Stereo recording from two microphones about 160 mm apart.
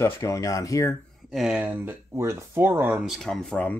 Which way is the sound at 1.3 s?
5° right (ahead or behind).